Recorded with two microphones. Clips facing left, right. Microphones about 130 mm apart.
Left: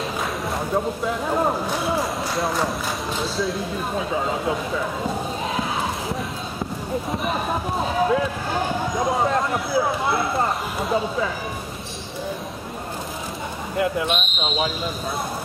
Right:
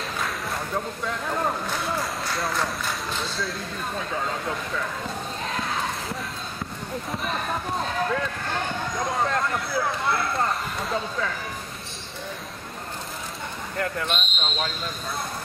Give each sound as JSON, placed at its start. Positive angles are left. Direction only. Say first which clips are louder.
{"t": 0.6, "sound": "speech", "louder": "left 8 dB", "side_deg": 15}
{"t": 1.7, "sound": "a sound", "louder": "left 5 dB", "side_deg": 10}
{"t": 3.1, "sound": "speech", "louder": "left 6 dB", "side_deg": 0}
{"t": 3.9, "sound": "speech", "louder": "left 5 dB", "side_deg": 15}
{"t": 5.5, "sound": "a sound", "louder": "left 2 dB", "side_deg": 10}
{"t": 7.2, "sound": "speech", "louder": "left 4 dB", "side_deg": 10}
{"t": 13.7, "sound": "speech", "louder": "left 6 dB", "side_deg": 10}